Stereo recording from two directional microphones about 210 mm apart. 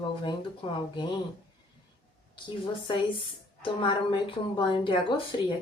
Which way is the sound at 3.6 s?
25° left (ahead or behind).